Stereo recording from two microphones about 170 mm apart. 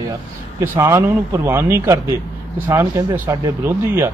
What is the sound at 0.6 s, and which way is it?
Speech, 15° right (ahead or behind).